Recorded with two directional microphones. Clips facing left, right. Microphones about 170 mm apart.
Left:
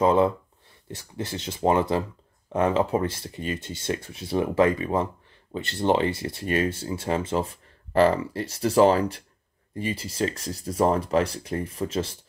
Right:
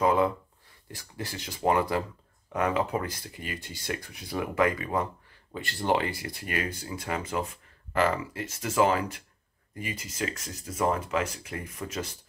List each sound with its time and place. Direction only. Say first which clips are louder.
0.0 s speech: left 4 dB; 25° left (ahead or behind)